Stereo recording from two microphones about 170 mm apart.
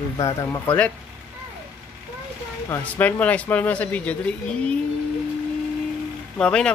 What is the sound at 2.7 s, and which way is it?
Speech, 10° left (ahead or behind).